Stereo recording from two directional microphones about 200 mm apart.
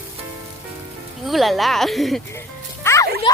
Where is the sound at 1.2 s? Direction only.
Centre (ahead or behind).